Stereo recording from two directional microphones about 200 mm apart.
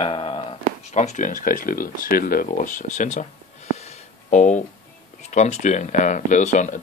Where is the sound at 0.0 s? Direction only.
25° left (ahead or behind).